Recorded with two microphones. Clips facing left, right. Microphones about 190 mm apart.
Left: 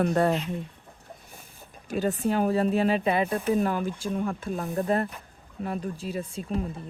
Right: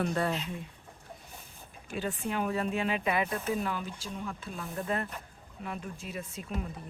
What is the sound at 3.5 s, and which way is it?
Speech, 45° left (ahead or behind).